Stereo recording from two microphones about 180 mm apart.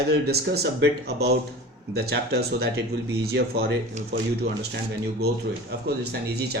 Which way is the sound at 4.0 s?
40° right (ahead or behind).